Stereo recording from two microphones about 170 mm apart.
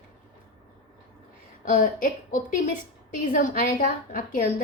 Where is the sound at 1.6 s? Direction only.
50° left (ahead or behind).